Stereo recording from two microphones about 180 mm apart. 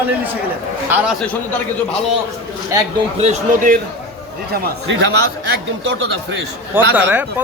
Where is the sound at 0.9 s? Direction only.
10° right (ahead or behind).